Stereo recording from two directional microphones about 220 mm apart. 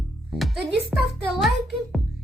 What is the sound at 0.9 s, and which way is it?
Speech, centre (ahead or behind).